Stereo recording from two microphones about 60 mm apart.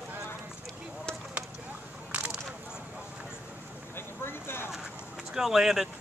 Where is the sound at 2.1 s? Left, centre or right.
Right.